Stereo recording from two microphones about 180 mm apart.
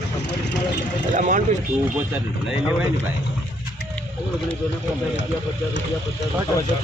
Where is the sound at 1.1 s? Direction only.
45° right (ahead or behind).